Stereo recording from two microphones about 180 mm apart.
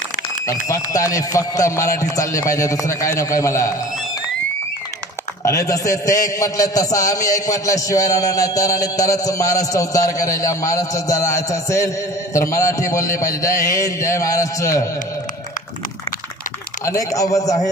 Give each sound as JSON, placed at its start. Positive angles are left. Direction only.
{"t": 0.5, "sound": "a man's voice", "side_deg": 15}
{"t": 5.4, "sound": "a man's voice", "side_deg": 15}
{"t": 16.8, "sound": "a man's voice", "side_deg": 20}